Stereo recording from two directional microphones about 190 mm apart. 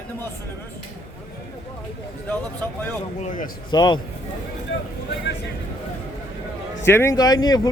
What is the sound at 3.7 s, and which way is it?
Speech, 25° left (ahead or behind).